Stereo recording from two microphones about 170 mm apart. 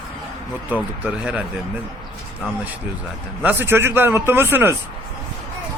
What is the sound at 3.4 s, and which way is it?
A man's voice, 10° right (ahead or behind).